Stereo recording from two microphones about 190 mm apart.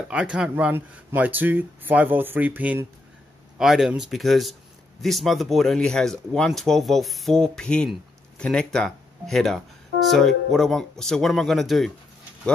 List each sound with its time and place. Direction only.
0.1 s speech: 5° right (ahead or behind)